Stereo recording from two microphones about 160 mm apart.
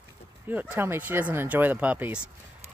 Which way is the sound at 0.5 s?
10° right (ahead or behind).